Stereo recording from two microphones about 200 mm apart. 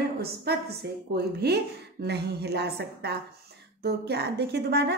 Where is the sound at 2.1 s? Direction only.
55° right (ahead or behind).